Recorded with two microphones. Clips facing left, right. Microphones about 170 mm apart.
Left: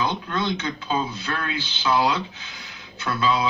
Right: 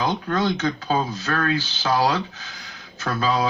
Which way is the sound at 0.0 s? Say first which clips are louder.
Right 3 dB; 40° right (ahead or behind).